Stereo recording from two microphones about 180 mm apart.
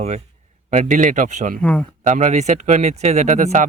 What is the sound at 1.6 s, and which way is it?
Speech, 5° left (ahead or behind).